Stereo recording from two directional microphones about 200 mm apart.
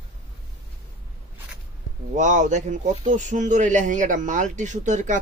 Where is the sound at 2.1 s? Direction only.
40° right (ahead or behind).